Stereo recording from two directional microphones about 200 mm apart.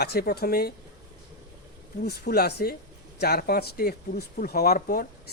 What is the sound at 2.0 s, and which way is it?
Speech, 50° left (ahead or behind).